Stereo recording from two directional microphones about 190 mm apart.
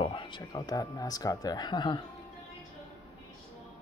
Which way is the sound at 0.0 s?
25° left (ahead or behind).